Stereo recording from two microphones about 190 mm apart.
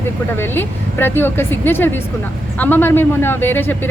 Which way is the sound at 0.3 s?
10° left (ahead or behind).